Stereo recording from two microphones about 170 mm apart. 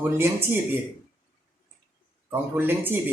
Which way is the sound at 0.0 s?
15° right (ahead or behind).